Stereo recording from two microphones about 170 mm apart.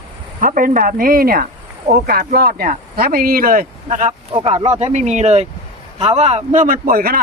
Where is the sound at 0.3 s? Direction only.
50° right (ahead or behind).